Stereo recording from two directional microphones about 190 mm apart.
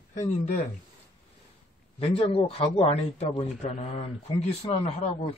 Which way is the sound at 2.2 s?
30° left (ahead or behind).